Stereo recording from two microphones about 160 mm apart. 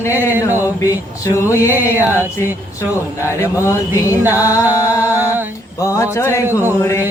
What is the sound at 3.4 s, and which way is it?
Music, 15° left (ahead or behind).